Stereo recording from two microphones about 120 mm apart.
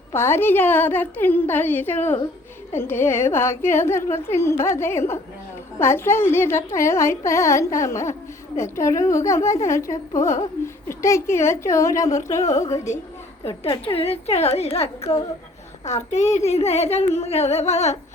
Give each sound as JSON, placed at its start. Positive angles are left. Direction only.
{"t": 0.1, "sound": "a woman's voice", "side_deg": 20}
{"t": 12.3, "sound": "speech", "side_deg": 75}
{"t": 13.5, "sound": "speech", "side_deg": 50}
{"t": 15.9, "sound": "speech", "side_deg": 75}